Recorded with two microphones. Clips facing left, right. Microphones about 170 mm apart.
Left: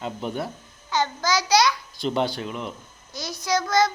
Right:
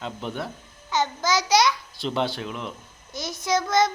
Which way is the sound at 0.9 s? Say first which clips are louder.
Even; 20° right (ahead or behind).